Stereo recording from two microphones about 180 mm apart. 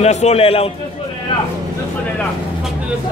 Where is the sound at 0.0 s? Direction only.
35° left (ahead or behind).